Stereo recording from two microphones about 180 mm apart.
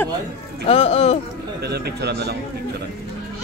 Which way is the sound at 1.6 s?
65° right (ahead or behind).